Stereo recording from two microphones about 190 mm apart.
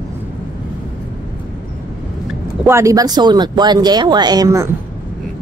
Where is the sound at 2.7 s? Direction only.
15° right (ahead or behind).